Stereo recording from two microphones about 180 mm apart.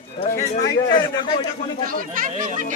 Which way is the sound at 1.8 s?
50° right (ahead or behind).